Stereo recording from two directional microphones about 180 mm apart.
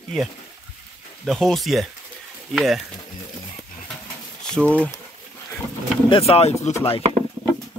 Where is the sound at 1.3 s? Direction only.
Centre (ahead or behind).